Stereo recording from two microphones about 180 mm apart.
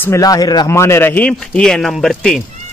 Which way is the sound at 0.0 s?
20° left (ahead or behind).